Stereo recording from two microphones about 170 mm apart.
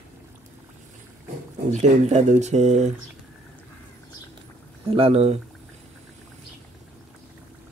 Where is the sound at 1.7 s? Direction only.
40° right (ahead or behind).